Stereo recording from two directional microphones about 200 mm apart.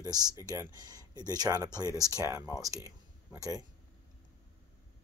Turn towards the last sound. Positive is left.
turn(degrees=-15)  # may be behind; listen again after turning